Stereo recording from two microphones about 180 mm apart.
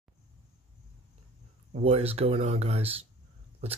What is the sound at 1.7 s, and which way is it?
Speech, 35° right (ahead or behind).